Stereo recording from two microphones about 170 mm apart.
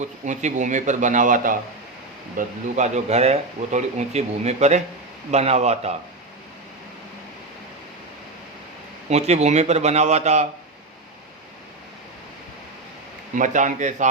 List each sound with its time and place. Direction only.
0.0 s a man's voice: 45° right (ahead or behind)
9.0 s a man's voice: 40° right (ahead or behind)
13.3 s speech: 50° right (ahead or behind)